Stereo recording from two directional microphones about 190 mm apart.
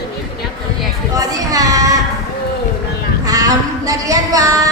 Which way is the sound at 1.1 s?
20° right (ahead or behind).